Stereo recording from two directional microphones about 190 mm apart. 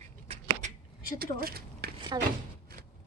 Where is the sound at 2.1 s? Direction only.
25° right (ahead or behind).